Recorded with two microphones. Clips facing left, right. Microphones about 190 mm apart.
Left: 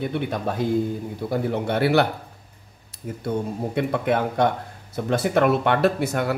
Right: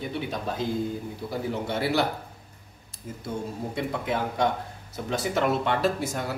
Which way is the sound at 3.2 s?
60° left (ahead or behind).